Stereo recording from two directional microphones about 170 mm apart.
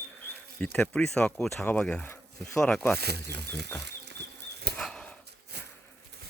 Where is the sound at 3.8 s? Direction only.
80° right.